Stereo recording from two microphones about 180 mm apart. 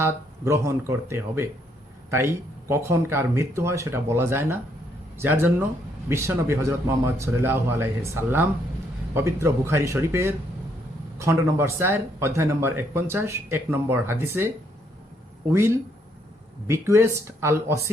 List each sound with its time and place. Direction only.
0.0 s speech: 15° right (ahead or behind)
15.5 s speech: 15° right (ahead or behind)